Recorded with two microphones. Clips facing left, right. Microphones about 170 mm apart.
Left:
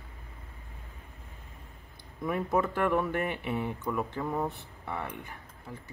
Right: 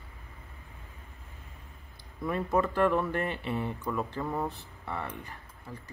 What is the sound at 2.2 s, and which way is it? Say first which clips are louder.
Speech: even; 5° left (ahead or behind).